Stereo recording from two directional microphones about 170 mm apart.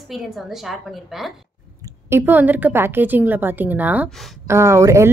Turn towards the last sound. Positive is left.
turn(degrees=-15)  # may be behind; listen again after turning